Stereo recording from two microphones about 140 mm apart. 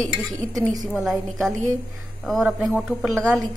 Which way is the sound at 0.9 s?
Centre (ahead or behind).